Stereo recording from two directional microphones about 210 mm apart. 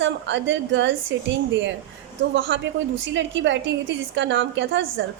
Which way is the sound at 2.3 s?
60° right (ahead or behind).